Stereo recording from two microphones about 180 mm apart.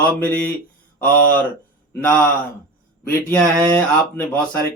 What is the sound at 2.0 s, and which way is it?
Speech, 10° left (ahead or behind).